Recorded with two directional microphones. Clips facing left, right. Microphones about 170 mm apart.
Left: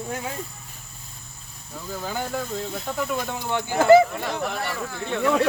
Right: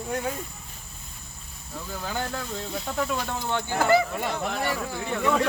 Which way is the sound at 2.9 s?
Centre (ahead or behind).